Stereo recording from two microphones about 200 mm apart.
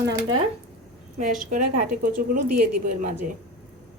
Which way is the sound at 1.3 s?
40° right (ahead or behind).